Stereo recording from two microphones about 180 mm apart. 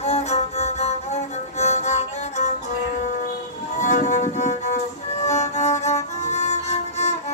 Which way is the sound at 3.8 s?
40° left (ahead or behind).